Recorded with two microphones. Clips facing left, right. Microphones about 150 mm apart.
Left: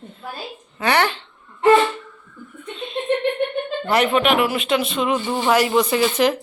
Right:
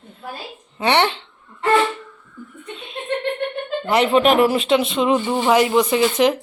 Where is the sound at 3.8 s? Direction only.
25° right (ahead or behind).